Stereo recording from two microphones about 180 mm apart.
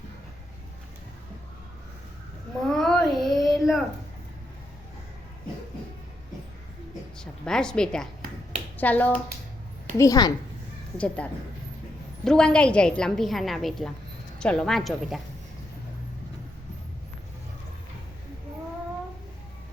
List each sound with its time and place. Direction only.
2.6 s child singing: centre (ahead or behind)
7.2 s a woman's voice: 5° left (ahead or behind)
10.0 s a woman's voice: 20° left (ahead or behind)
10.9 s a woman's voice: 5° left (ahead or behind)